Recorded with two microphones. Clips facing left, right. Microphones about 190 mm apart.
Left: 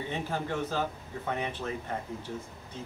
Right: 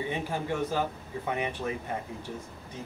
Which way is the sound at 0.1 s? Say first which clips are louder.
Right 1 dB; 10° right (ahead or behind).